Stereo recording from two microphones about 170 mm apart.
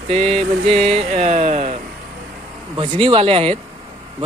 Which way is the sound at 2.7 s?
30° right (ahead or behind).